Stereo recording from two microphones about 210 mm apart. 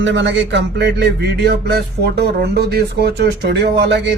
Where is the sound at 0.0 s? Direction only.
60° right (ahead or behind).